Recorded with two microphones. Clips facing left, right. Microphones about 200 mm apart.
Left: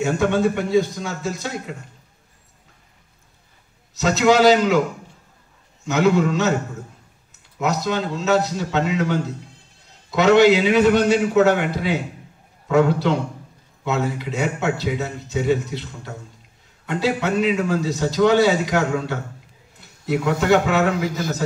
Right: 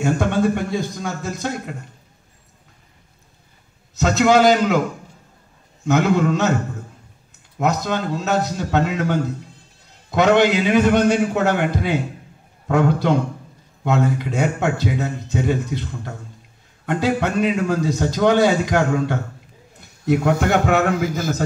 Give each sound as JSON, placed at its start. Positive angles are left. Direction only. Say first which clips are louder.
{"t": 0.0, "sound": "a man's voice", "louder": "even", "side_deg": -50}
{"t": 4.0, "sound": "a man's voice", "louder": "even", "side_deg": -50}
{"t": 5.9, "sound": "a man's voice", "louder": "even", "side_deg": -50}
{"t": 7.5, "sound": "a man's voice", "louder": "right 1 dB", "side_deg": -50}